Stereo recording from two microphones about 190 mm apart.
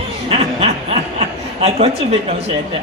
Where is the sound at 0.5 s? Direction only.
30° right (ahead or behind).